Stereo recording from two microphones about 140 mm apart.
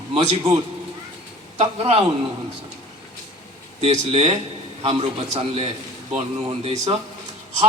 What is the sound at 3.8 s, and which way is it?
Speech, 50° right (ahead or behind).